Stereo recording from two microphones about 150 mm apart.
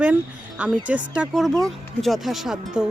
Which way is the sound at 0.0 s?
10° right (ahead or behind).